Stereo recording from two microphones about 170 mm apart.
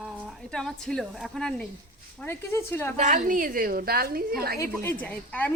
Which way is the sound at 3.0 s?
50° right (ahead or behind).